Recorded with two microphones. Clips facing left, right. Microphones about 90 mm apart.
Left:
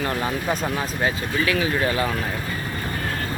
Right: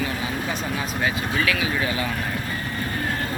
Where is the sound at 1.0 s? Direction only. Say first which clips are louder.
Even; 35° left (ahead or behind).